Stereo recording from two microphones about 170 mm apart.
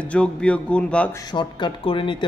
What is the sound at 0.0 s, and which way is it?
Speech, 5° left (ahead or behind).